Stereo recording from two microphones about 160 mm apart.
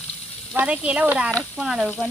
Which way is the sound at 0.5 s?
10° right (ahead or behind).